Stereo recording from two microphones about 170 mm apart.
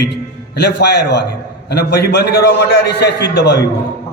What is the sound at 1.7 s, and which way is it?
A man's voice, 70° left (ahead or behind).